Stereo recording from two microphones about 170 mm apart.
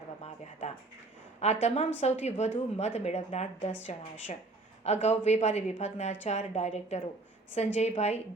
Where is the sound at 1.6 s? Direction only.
40° left (ahead or behind).